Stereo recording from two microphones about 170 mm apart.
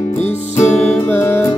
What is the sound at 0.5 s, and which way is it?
Music, 15° left (ahead or behind).